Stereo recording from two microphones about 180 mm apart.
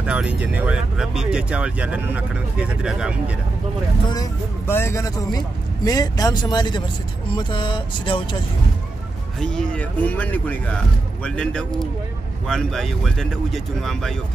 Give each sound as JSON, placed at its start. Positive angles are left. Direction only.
{"t": 0.0, "sound": "speech", "side_deg": -5}
{"t": 4.1, "sound": "speech", "side_deg": 15}
{"t": 9.4, "sound": "speech", "side_deg": 5}